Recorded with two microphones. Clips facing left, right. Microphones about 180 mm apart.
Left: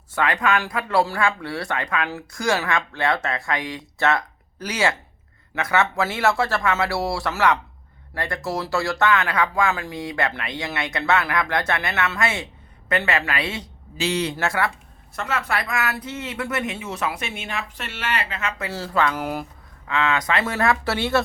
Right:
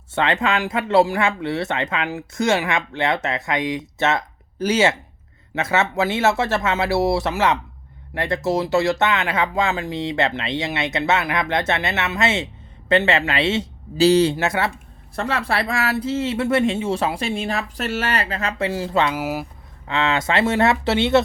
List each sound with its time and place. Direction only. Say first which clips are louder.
0.1 s speech: right 1 dB; 25° right (ahead or behind)
14.3 s speech: right 2 dB; 20° right (ahead or behind)
15.1 s speech: right 3 dB; 35° right (ahead or behind)
18.7 s speech: even; 20° right (ahead or behind)
19.1 s speech: right 2 dB; 5° right (ahead or behind)
19.9 s speech: right 2 dB; 25° right (ahead or behind)